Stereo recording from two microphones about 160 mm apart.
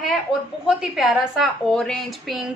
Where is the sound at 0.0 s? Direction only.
Centre (ahead or behind).